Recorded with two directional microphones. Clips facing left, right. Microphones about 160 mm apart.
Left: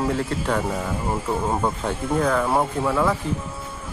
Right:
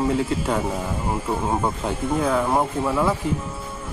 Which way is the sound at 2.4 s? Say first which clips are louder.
Even; centre (ahead or behind).